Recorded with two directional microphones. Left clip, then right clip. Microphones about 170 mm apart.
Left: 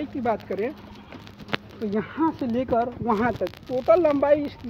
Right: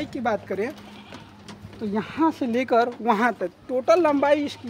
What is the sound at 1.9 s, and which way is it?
Speech, 40° right (ahead or behind).